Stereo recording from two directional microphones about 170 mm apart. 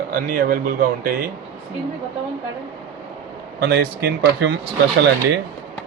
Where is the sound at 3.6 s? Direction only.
75° right (ahead or behind).